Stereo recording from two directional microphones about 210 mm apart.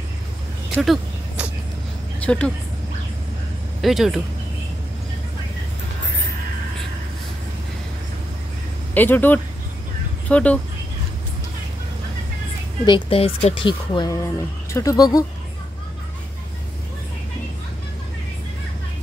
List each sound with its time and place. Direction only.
0.7 s a sound: 5° right (ahead or behind)
2.1 s a woman's voice: 5° left (ahead or behind)
3.8 s speech: centre (ahead or behind)
8.9 s speech: 10° left (ahead or behind)
12.8 s speech: 25° left (ahead or behind)